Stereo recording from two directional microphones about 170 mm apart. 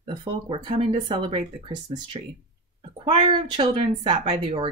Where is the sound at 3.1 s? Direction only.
30° right (ahead or behind).